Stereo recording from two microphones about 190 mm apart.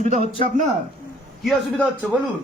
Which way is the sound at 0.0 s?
40° right (ahead or behind).